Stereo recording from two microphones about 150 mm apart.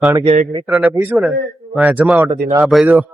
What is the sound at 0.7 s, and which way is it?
A man's voice, 10° right (ahead or behind).